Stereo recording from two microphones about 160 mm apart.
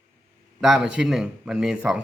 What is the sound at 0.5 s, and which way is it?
A man's voice, centre (ahead or behind).